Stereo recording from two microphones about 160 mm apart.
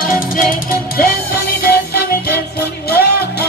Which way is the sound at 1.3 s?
75° left (ahead or behind).